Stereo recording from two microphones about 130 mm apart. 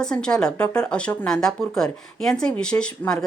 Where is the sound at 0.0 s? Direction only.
5° left (ahead or behind).